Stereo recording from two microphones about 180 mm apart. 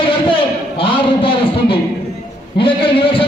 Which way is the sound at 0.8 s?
30° left (ahead or behind).